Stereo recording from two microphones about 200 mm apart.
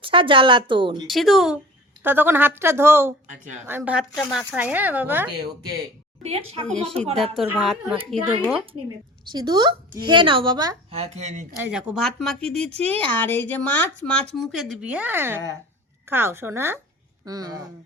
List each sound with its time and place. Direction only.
0.0 s a woman's voice: 25° right (ahead or behind)
1.0 s speech: centre (ahead or behind)
6.2 s speech: 30° right (ahead or behind)
6.7 s speech: 5° left (ahead or behind)
9.3 s a woman's voice: 20° right (ahead or behind)
10.9 s speech: 35° right (ahead or behind)
11.6 s a woman's voice: 5° right (ahead or behind)